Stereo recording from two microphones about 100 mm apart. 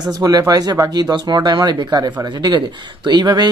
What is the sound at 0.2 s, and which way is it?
Speech, 40° right (ahead or behind).